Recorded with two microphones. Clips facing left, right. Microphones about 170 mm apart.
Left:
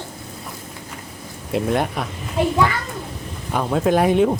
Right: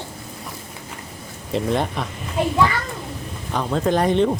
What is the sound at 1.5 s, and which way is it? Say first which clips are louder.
Speech: left 1 dB; 5° left (ahead or behind).